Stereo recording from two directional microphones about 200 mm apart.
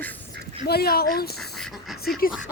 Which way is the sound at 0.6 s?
50° left (ahead or behind).